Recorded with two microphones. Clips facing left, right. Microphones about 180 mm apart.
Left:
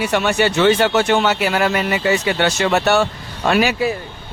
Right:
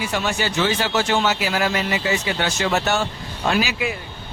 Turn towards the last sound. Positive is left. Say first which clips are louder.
# left 5 dB
turn(degrees=65)  # may be behind; listen again after turning